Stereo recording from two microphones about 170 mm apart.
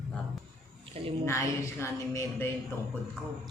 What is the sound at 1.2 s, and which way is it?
A woman's voice, 15° left (ahead or behind).